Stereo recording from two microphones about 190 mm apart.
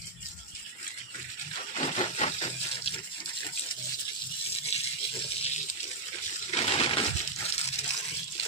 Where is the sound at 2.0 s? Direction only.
35° left (ahead or behind).